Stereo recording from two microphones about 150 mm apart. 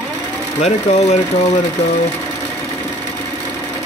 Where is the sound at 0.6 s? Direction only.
50° left (ahead or behind).